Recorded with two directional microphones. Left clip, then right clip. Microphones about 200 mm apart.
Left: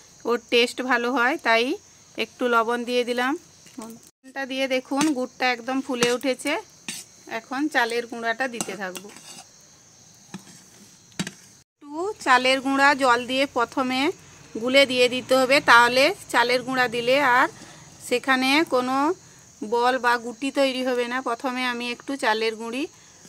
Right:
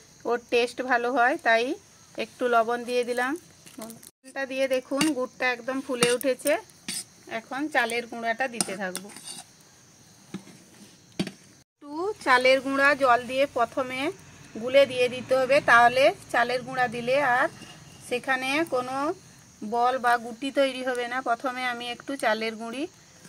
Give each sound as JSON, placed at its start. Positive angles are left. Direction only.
{"t": 0.2, "sound": "speech", "side_deg": 30}
{"t": 7.2, "sound": "speech", "side_deg": 35}
{"t": 9.1, "sound": "cutlery", "side_deg": 0}
{"t": 11.9, "sound": "speech", "side_deg": 10}
{"t": 12.6, "sound": "speech", "side_deg": 30}
{"t": 19.7, "sound": "speech", "side_deg": 35}